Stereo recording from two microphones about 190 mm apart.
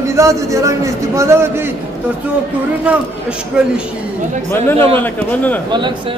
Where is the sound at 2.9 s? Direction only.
5° right (ahead or behind).